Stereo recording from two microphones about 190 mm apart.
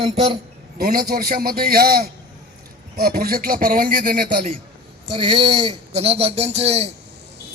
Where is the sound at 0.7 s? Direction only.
55° right (ahead or behind).